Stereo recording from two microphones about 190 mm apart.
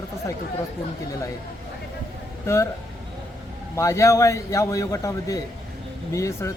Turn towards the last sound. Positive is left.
turn(degrees=15)  # may be behind; listen again after turning